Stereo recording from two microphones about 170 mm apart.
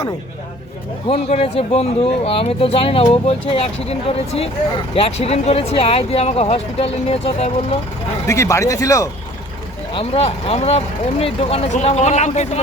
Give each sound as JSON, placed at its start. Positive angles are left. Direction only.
{"t": 1.0, "sound": "speech", "side_deg": 40}
{"t": 4.9, "sound": "speech", "side_deg": 35}
{"t": 8.3, "sound": "speech", "side_deg": 20}
{"t": 9.9, "sound": "speech", "side_deg": 35}